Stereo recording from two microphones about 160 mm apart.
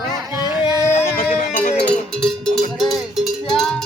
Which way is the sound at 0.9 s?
50° left (ahead or behind).